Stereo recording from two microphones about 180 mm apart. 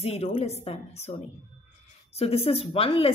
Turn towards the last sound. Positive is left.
turn(degrees=30)  # may be behind; listen again after turning